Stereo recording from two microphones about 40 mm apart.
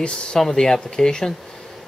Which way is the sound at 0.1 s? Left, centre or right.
Centre.